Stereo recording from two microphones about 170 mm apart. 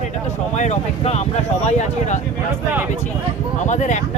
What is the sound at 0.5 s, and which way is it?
Speech, 45° left (ahead or behind).